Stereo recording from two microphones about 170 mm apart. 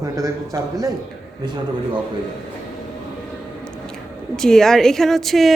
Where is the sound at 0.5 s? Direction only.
20° right (ahead or behind).